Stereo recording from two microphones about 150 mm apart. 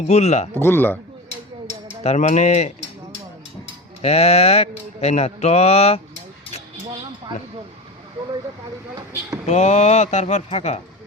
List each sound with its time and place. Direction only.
0.1 s mantra: 45° left (ahead or behind)
0.5 s a man's voice: 15° left (ahead or behind)
2.0 s mantra: 50° left (ahead or behind)
4.0 s mantra: 45° left (ahead or behind)
9.5 s mantra: 50° left (ahead or behind)